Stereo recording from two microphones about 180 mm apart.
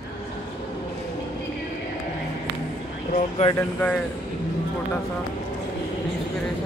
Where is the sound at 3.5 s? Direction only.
10° left (ahead or behind).